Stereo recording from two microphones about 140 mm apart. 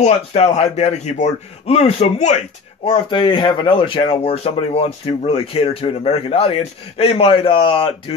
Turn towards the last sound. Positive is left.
turn(degrees=40)  # may be behind; listen again after turning